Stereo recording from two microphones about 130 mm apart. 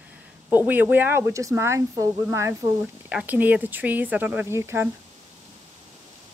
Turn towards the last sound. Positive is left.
turn(degrees=-20)  # may be behind; listen again after turning